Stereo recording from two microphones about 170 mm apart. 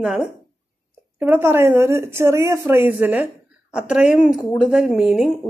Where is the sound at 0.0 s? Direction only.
5° right (ahead or behind).